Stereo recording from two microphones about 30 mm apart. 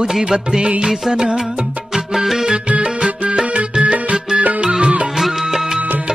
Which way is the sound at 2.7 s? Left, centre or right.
Right.